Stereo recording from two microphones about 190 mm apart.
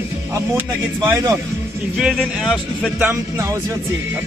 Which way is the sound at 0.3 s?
10° right (ahead or behind).